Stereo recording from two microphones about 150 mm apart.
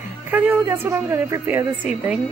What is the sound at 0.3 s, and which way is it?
A woman's voice, 10° right (ahead or behind).